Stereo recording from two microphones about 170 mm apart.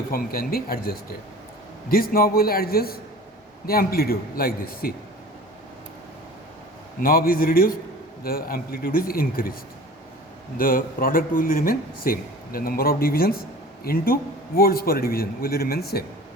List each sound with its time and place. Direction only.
0.1 s speech: 60° left (ahead or behind)
7.0 s speech: 60° left (ahead or behind)
10.6 s speech: 55° left (ahead or behind)